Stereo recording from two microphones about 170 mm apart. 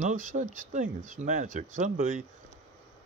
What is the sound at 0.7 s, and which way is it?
Speech, 50° right (ahead or behind).